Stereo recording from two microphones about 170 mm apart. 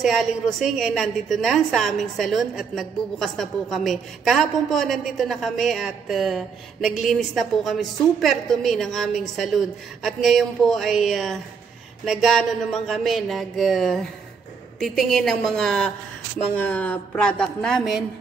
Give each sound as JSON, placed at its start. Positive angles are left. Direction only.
{"t": 0.0, "sound": "a woman's voice", "side_deg": 0}